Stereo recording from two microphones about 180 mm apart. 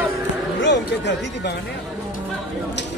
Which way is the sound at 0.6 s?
75° left (ahead or behind).